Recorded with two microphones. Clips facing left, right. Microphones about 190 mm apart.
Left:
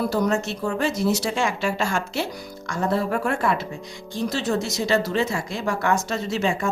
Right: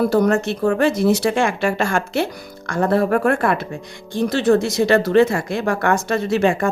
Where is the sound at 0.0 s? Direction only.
55° right (ahead or behind).